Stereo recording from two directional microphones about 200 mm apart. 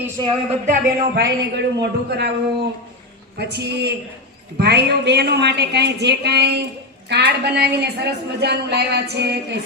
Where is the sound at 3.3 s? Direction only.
55° right (ahead or behind).